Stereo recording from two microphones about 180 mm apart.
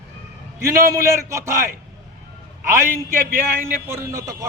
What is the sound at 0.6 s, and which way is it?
A man's voice, 15° right (ahead or behind).